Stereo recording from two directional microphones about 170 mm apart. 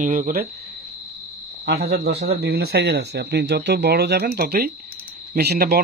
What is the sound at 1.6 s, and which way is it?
Speech, 75° right (ahead or behind).